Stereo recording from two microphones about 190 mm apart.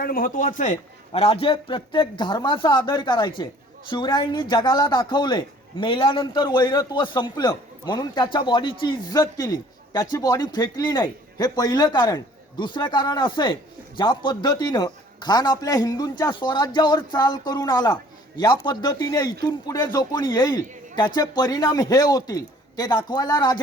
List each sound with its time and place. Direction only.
0.0 s a man's voice: 50° left (ahead or behind); by 23.6 s 20° left (ahead or behind)